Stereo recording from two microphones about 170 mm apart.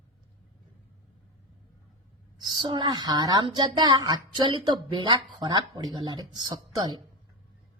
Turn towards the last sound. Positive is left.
turn(degrees=-25)  # may be behind; listen again after turning